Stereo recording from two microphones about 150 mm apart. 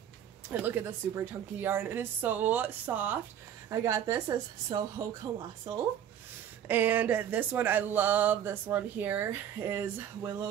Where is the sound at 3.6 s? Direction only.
20° right (ahead or behind).